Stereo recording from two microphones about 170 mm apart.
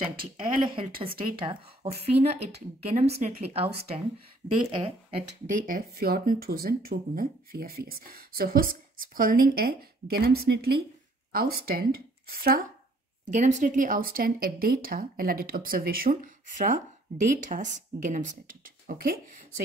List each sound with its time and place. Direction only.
0.4 s a woman's voice: 30° right (ahead or behind)
4.6 s a woman's voice: 30° right (ahead or behind)
5.7 s speech: 60° right (ahead or behind)
13.3 s speech: 45° right (ahead or behind)